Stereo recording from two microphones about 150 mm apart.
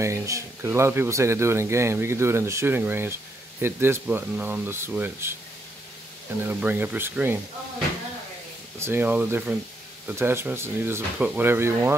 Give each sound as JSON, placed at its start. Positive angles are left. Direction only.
{"t": 0.0, "sound": "speech", "side_deg": -20}
{"t": 6.4, "sound": "speech", "side_deg": -10}
{"t": 8.7, "sound": "speech", "side_deg": -15}